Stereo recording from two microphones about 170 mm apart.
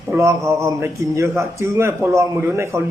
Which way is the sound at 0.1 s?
15° right (ahead or behind).